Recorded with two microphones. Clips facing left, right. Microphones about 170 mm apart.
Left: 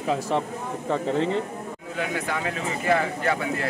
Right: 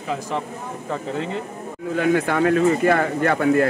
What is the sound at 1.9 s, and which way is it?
Speech, 55° right (ahead or behind).